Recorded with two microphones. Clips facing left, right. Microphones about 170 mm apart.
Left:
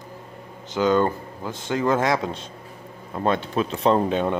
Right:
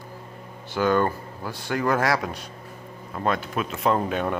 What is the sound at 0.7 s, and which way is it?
Speech, 20° left (ahead or behind).